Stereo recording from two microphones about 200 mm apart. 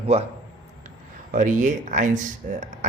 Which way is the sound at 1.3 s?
40° right (ahead or behind).